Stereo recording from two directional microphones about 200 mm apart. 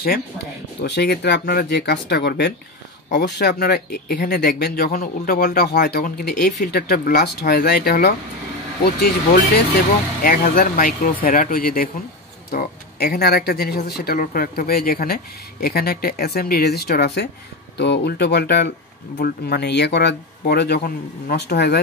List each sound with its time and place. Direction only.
0.8 s speech: 55° left (ahead or behind)